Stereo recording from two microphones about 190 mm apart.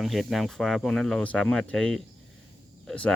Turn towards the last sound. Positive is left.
turn(degrees=5)  # may be behind; listen again after turning